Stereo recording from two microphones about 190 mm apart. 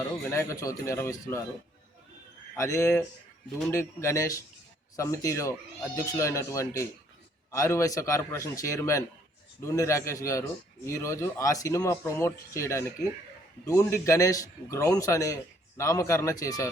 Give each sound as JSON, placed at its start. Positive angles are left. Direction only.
{"t": 0.3, "sound": "speech", "side_deg": 15}
{"t": 2.6, "sound": "speech", "side_deg": 15}